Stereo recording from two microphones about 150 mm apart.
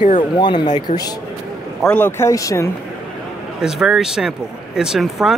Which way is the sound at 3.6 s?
5° right (ahead or behind).